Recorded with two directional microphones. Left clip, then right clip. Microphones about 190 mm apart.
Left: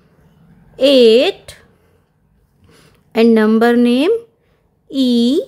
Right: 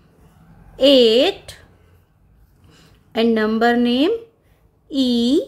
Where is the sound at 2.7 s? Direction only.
35° left (ahead or behind).